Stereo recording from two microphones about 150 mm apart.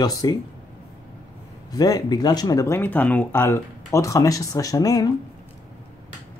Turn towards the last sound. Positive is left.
turn(degrees=25)  # may be behind; listen again after turning